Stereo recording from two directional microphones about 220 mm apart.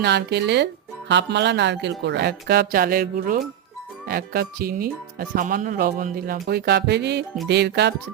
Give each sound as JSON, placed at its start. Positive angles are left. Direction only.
{"t": 0.0, "sound": "speech", "side_deg": -50}